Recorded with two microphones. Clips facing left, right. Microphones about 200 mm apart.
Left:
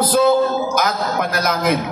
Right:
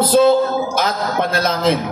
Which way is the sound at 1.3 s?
25° right (ahead or behind).